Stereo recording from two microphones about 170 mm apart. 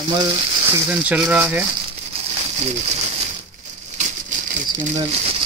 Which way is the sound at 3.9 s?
50° right (ahead or behind).